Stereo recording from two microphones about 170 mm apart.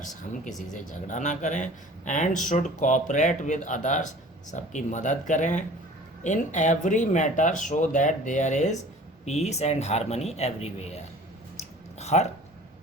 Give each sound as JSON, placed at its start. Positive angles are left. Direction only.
{"t": 0.7, "sound": "a man's voice", "side_deg": 45}